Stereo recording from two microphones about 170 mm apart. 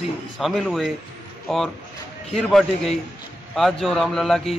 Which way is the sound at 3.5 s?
Centre (ahead or behind).